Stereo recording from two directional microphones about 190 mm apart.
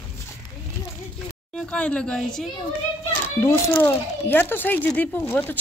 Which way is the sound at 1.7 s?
5° left (ahead or behind).